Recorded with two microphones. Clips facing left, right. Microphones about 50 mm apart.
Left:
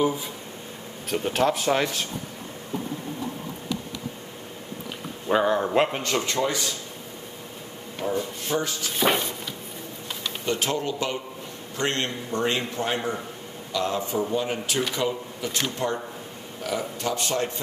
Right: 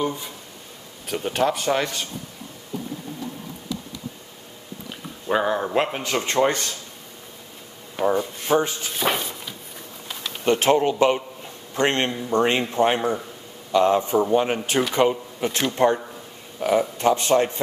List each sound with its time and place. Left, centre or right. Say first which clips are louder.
0.0 s speech: left 2 dB; centre
5.3 s speech: even; centre
6.4 s speech: right 5 dB; right
8.2 s speech: right 6 dB; right
8.9 s a sound: left 2 dB; centre
10.4 s a man's voice: right 9 dB; right